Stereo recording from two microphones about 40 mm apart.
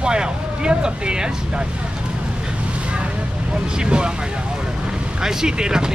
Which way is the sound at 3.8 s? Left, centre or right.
Right.